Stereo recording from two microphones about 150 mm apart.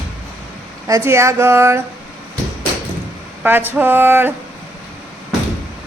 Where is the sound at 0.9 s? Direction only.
20° right (ahead or behind).